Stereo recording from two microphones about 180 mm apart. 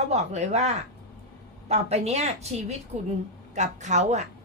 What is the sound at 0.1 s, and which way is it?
A woman's voice, 40° right (ahead or behind).